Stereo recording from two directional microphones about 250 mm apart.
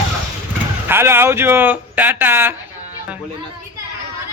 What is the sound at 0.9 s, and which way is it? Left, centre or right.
Speech, centre.